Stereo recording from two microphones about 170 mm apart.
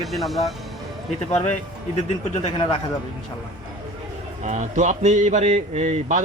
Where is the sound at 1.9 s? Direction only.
40° left (ahead or behind).